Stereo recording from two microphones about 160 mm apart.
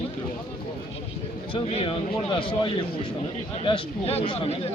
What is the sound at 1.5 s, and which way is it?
Speech, 35° left (ahead or behind).